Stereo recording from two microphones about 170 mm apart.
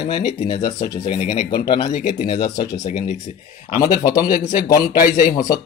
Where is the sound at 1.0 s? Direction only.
40° left (ahead or behind).